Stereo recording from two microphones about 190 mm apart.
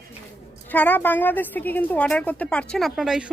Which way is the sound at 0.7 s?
10° left (ahead or behind).